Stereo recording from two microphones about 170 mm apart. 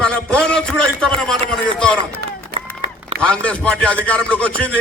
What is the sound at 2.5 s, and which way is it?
Run, 65° right (ahead or behind).